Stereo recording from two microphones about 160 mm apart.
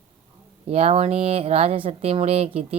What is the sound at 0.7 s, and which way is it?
A woman's voice, 40° right (ahead or behind).